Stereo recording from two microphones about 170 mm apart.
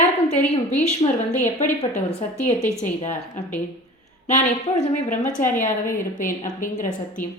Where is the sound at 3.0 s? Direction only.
40° left (ahead or behind).